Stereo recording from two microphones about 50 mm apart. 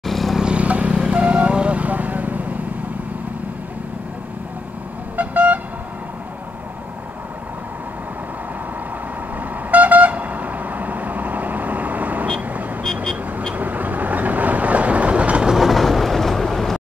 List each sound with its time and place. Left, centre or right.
0.0 s vehicle: centre
0.4 s vehicle: right
5.1 s vehicle: right
9.7 s vehicle: right
13.0 s vehicle: centre
13.6 s vehicle: right
15.5 s train: centre